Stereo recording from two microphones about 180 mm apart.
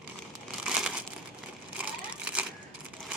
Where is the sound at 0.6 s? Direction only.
5° right (ahead or behind).